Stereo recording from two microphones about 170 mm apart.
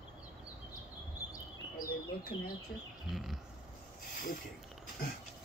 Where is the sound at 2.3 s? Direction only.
30° left (ahead or behind).